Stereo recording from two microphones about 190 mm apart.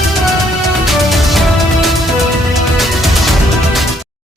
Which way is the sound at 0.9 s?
Centre (ahead or behind).